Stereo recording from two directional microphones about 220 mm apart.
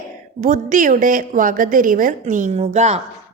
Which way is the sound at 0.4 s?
35° right (ahead or behind).